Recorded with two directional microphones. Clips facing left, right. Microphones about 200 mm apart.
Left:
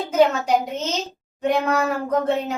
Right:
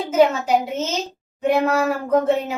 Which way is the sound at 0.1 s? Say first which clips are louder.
Right 1 dB; 5° right (ahead or behind).